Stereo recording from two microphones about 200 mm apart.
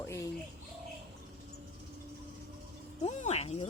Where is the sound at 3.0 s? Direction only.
35° left (ahead or behind).